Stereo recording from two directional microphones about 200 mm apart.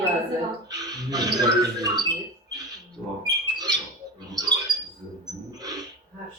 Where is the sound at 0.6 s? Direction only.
20° right (ahead or behind).